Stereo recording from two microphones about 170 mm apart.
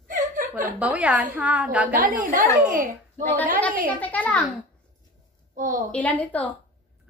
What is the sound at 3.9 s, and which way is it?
Speech, 10° left (ahead or behind).